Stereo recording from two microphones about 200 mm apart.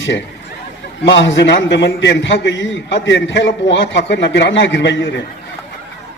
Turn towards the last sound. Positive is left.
turn(degrees=65)  # may be behind; listen again after turning